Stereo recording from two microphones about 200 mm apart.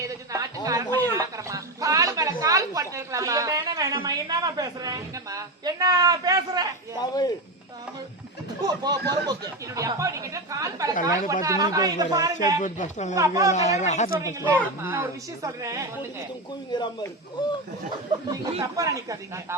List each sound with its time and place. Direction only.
0.0 s a sound: 15° right (ahead or behind)
7.0 s speech: 20° left (ahead or behind)
8.6 s speech: 20° right (ahead or behind)
12.6 s speech: 40° left (ahead or behind)
13.1 s speech: 15° right (ahead or behind)
13.5 s speech: 35° left (ahead or behind)
14.4 s speech: 10° right (ahead or behind)
16.7 s speech: 20° left (ahead or behind)
18.6 s speech: 15° right (ahead or behind)